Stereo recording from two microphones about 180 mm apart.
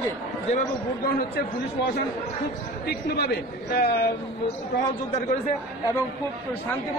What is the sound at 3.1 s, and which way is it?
Speech, 60° left (ahead or behind).